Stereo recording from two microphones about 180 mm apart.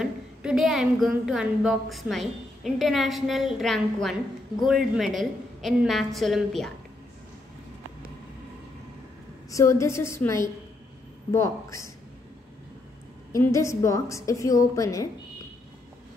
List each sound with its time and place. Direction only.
0.0 s speech: 5° right (ahead or behind)
9.5 s a woman's voice: 15° left (ahead or behind)
13.3 s a woman's voice: 15° left (ahead or behind)